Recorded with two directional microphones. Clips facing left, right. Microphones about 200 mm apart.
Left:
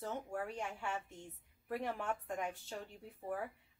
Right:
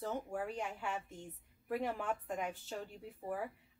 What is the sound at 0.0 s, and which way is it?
Speech, 5° right (ahead or behind).